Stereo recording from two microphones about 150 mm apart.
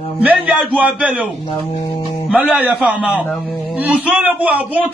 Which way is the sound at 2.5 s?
10° right (ahead or behind).